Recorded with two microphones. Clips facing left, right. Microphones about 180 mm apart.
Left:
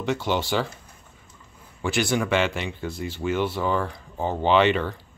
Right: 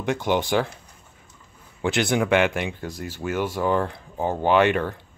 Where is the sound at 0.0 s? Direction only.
15° right (ahead or behind).